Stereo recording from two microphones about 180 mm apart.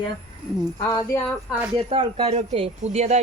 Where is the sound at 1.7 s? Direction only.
30° right (ahead or behind).